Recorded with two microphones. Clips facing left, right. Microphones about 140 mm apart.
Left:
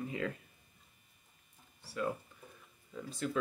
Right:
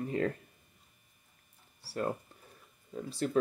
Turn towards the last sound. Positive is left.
turn(degrees=-35)  # may be behind; listen again after turning